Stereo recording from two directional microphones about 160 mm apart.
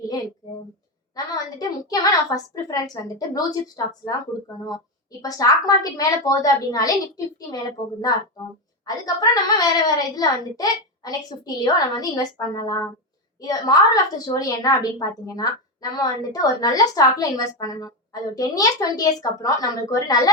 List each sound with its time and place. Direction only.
1.1 s a woman's voice: 25° left (ahead or behind)